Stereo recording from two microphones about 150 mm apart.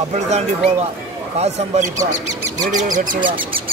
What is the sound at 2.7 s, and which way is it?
Speech, 60° right (ahead or behind).